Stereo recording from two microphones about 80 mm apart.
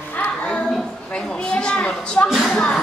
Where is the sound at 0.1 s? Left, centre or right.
Left.